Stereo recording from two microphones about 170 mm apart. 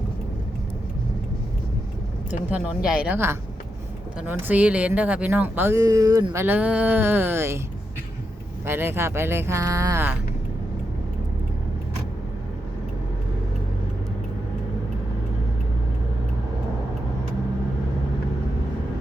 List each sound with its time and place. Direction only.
2.5 s speech: 5° right (ahead or behind)
8.6 s speech: 15° right (ahead or behind)